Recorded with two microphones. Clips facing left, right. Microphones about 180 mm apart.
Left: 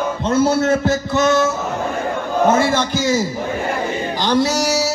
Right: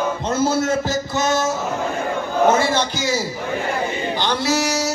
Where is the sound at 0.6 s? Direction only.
60° left (ahead or behind).